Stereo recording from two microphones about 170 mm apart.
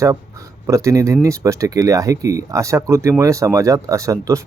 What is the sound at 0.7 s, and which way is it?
Speech, 20° right (ahead or behind).